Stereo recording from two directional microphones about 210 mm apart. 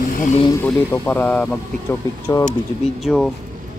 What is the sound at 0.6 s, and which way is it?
Speech, 10° left (ahead or behind).